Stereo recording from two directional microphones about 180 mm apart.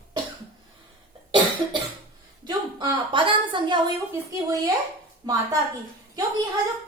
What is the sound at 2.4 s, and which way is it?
A woman's voice, 25° right (ahead or behind).